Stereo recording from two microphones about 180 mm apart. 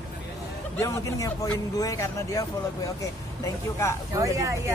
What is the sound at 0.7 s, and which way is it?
Speech, 15° left (ahead or behind).